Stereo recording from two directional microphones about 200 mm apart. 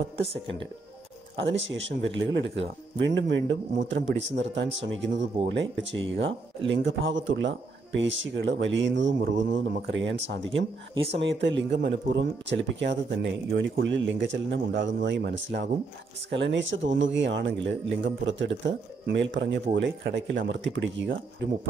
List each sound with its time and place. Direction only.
1.3 s speech: 65° right (ahead or behind)